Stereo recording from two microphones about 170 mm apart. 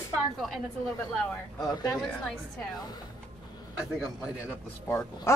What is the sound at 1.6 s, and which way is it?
Speech, 20° left (ahead or behind).